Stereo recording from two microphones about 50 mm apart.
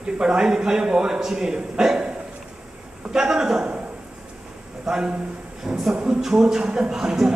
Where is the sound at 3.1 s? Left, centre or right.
Centre.